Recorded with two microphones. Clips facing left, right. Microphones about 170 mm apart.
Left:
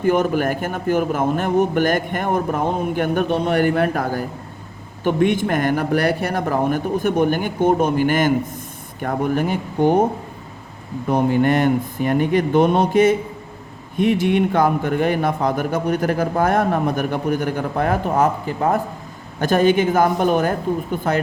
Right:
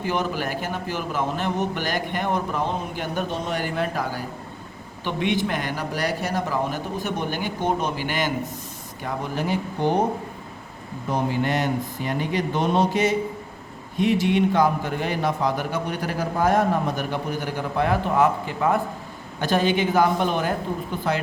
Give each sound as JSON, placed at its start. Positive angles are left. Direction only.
{"t": 0.0, "sound": "a man's voice", "side_deg": 50}
{"t": 11.1, "sound": "a man's voice", "side_deg": 55}